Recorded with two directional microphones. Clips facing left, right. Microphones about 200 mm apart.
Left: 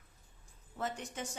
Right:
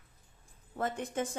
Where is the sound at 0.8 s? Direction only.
55° right (ahead or behind).